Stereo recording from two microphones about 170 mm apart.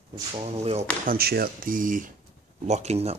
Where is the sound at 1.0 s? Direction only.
60° right (ahead or behind).